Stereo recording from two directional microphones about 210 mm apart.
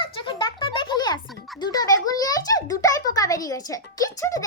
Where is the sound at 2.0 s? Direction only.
15° left (ahead or behind).